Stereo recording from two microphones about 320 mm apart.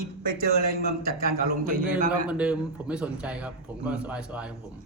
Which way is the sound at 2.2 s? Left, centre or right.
Centre.